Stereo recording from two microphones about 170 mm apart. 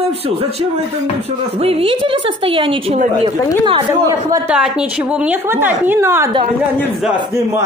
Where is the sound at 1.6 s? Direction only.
35° right (ahead or behind).